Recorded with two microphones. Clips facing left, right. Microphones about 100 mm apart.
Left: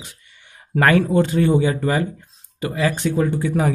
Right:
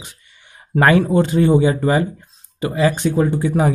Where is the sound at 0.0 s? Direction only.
25° right (ahead or behind).